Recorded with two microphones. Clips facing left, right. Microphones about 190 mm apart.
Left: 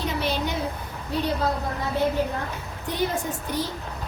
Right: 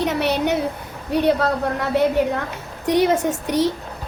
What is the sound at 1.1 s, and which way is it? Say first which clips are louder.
A woman's voice: right 7 dB; 70° right (ahead or behind).